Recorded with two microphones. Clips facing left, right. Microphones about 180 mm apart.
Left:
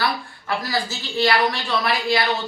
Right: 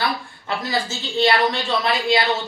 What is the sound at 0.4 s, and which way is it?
Speech, 25° right (ahead or behind).